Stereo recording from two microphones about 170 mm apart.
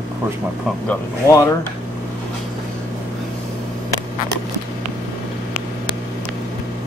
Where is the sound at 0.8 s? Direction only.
15° left (ahead or behind).